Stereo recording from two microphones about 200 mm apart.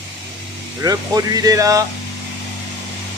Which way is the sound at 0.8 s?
15° right (ahead or behind).